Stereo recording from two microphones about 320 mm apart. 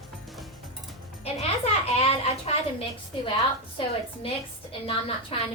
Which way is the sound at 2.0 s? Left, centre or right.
Centre.